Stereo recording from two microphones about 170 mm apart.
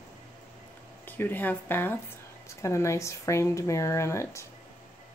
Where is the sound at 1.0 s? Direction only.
10° left (ahead or behind).